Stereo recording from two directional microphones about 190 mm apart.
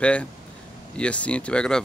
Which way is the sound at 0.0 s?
5° left (ahead or behind).